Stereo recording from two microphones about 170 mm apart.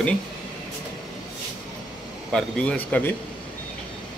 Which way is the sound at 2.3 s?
10° left (ahead or behind).